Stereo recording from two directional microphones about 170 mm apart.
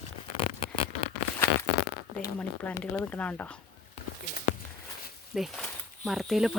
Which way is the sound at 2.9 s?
10° left (ahead or behind).